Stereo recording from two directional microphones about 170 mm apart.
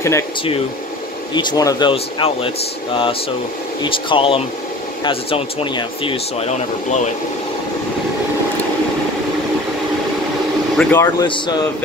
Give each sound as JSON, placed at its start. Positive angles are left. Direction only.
{"t": 1.3, "sound": "speech", "side_deg": 25}
{"t": 10.8, "sound": "speech", "side_deg": 15}
{"t": 11.2, "sound": "speech", "side_deg": 30}